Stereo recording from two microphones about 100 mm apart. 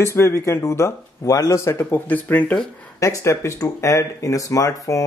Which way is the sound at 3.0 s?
30° left (ahead or behind).